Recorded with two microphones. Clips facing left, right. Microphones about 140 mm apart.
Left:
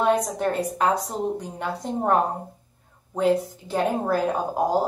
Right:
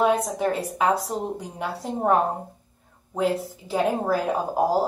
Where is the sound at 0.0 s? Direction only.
5° right (ahead or behind).